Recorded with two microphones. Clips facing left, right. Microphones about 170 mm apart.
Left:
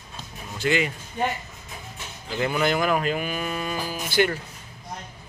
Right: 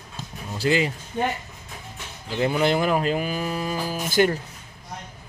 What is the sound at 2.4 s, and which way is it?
Speech, 30° right (ahead or behind).